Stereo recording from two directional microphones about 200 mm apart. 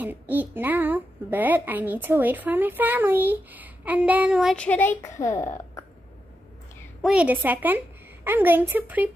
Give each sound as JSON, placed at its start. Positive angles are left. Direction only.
{"t": 0.0, "sound": "a child's voice", "side_deg": -10}
{"t": 7.0, "sound": "a woman's voice", "side_deg": -5}